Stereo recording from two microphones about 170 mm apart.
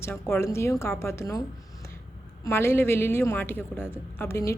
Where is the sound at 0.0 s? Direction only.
15° left (ahead or behind).